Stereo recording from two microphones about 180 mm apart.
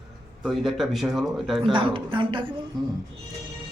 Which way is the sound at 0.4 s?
Centre (ahead or behind).